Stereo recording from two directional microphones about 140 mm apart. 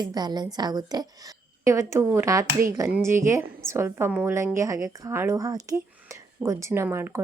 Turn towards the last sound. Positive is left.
turn(degrees=-20)  # may be behind; listen again after turning